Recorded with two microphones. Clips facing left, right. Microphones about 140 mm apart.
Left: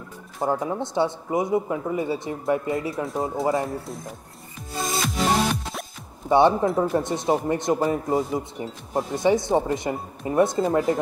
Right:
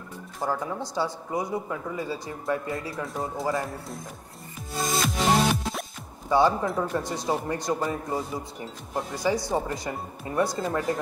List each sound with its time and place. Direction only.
0.4 s speech: 25° left (ahead or behind)
3.1 s speech: centre (ahead or behind)
4.7 s music: centre (ahead or behind)
6.2 s speech: 25° left (ahead or behind)
8.2 s speech: centre (ahead or behind)
8.9 s speech: 25° left (ahead or behind)